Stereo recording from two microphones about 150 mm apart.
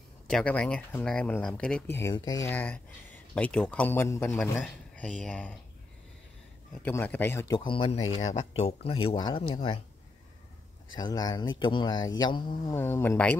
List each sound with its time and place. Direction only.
0.3 s speech: 5° left (ahead or behind)
2.1 s speech: 25° left (ahead or behind)
2.5 s speech: 10° left (ahead or behind)
4.9 s speech: 5° left (ahead or behind)
6.8 s speech: 15° left (ahead or behind)
7.5 s speech: 35° left (ahead or behind)
8.3 s speech: 45° left (ahead or behind)
11.0 s speech: 25° left (ahead or behind)
12.7 s speech: 15° left (ahead or behind)